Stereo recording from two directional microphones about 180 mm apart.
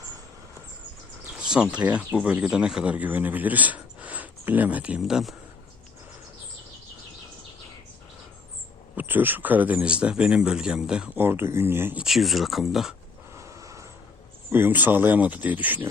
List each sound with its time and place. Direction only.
1.4 s speech: 5° right (ahead or behind)
9.0 s speech: 10° right (ahead or behind)
13.3 s a sound: 15° right (ahead or behind)
14.5 s speech: 10° right (ahead or behind)